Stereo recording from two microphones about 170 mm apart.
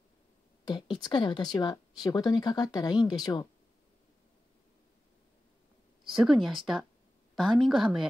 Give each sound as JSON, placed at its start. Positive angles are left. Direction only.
{"t": 0.7, "sound": "speech", "side_deg": 25}
{"t": 6.0, "sound": "speech", "side_deg": 0}